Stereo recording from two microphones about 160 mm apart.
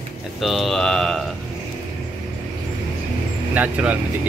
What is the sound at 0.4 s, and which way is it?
Speech, centre (ahead or behind).